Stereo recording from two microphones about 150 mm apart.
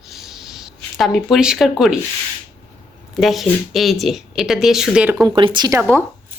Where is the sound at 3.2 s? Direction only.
Centre (ahead or behind).